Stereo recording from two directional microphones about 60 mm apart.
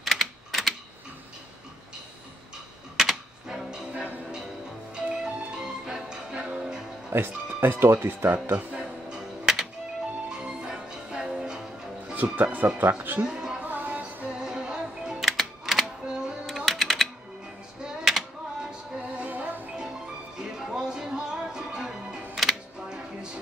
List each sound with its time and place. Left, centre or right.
0.0 s typing: centre
3.0 s music: centre
7.1 s speech: right
8.3 s speech: right
9.1 s music: centre
12.4 s speech: right
13.2 s a sound: centre
13.6 s music: right
14.3 s music: centre
16.1 s music: centre
16.5 s typing: centre
17.8 s music: centre; by 19.7 s right
19.8 s music: centre
22.3 s a sound: centre